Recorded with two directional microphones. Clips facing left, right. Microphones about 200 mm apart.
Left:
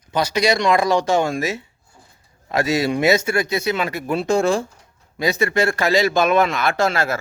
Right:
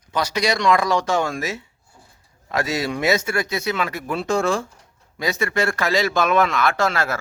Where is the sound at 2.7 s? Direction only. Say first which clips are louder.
Left 4 dB; centre (ahead or behind).